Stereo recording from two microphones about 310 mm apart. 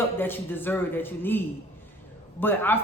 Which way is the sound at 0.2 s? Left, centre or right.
Centre.